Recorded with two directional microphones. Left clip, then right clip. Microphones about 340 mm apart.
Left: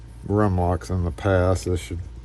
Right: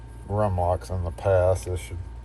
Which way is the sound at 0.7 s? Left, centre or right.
Left.